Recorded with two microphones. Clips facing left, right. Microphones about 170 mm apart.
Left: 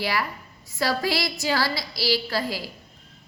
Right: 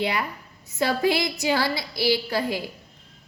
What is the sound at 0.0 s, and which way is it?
A woman's voice, 20° right (ahead or behind).